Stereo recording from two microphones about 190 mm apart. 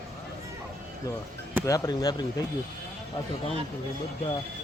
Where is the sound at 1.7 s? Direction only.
20° left (ahead or behind).